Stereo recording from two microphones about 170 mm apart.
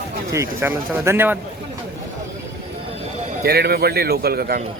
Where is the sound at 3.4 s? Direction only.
65° right (ahead or behind).